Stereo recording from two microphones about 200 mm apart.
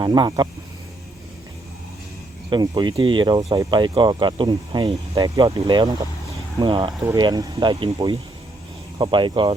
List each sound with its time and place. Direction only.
0.0 s speech: 20° right (ahead or behind)
2.5 s speech: 20° right (ahead or behind)